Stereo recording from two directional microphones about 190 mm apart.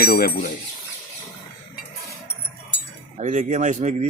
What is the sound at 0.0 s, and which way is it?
Speech, 55° left (ahead or behind).